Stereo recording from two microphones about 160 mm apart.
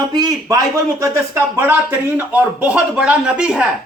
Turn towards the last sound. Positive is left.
turn(degrees=-5)  # may be behind; listen again after turning